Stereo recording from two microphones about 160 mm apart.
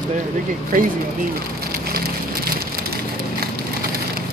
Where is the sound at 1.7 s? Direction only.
70° right (ahead or behind).